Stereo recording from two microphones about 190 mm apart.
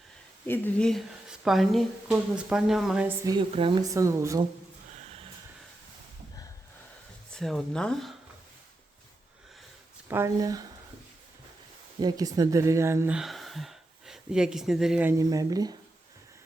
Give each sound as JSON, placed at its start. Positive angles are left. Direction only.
{"t": 0.4, "sound": "speech", "side_deg": 10}
{"t": 3.5, "sound": "speech", "side_deg": -30}
{"t": 3.8, "sound": "speech", "side_deg": -15}
{"t": 4.9, "sound": "a sound", "side_deg": -30}
{"t": 7.3, "sound": "speech", "side_deg": 0}
{"t": 10.1, "sound": "speech", "side_deg": -15}
{"t": 11.9, "sound": "speech", "side_deg": -20}
{"t": 15.2, "sound": "speech", "side_deg": -20}